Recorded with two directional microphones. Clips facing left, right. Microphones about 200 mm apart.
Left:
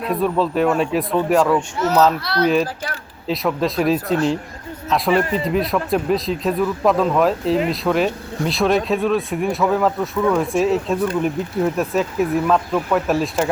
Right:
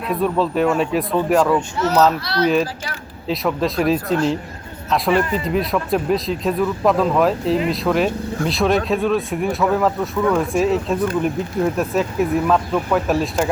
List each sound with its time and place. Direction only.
0.0 s speech: centre (ahead or behind)
2.2 s speech: 55° left (ahead or behind)
3.2 s speech: centre (ahead or behind)